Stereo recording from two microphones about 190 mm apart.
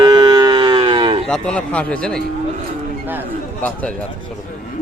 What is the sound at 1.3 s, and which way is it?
Speech, 5° left (ahead or behind).